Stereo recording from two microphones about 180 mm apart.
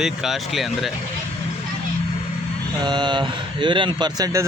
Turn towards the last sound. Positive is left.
turn(degrees=-20)  # may be behind; listen again after turning